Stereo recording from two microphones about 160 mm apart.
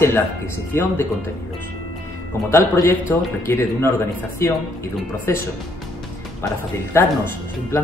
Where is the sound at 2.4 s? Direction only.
15° left (ahead or behind).